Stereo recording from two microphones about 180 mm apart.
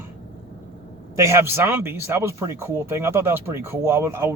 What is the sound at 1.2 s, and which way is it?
Speech, 15° right (ahead or behind).